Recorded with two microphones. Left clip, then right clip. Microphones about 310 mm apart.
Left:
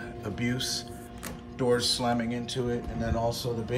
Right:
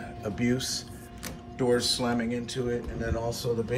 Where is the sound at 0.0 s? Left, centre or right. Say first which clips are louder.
Right 2 dB; centre.